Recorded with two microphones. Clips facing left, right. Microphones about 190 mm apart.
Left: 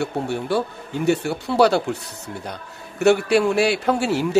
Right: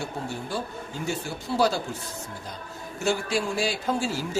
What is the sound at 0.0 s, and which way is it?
A man's voice, 70° left (ahead or behind).